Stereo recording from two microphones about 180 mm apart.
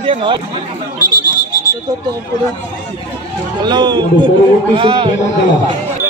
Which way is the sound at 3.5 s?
25° right (ahead or behind).